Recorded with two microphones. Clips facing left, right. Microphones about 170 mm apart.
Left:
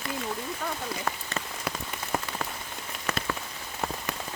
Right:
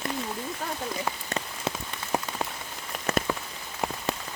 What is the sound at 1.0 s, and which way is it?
Rain on surface, 20° right (ahead or behind).